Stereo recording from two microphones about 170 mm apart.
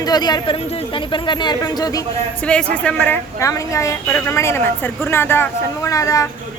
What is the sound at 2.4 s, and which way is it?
A man's voice, 5° left (ahead or behind).